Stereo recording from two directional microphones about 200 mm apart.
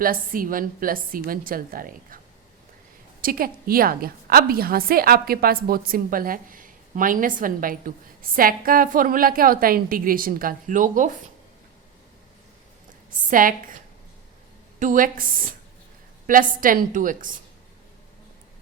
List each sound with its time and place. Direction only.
0.0 s a woman's voice: 45° right (ahead or behind)
3.2 s a woman's voice: 45° right (ahead or behind)
13.3 s a woman's voice: 45° right (ahead or behind)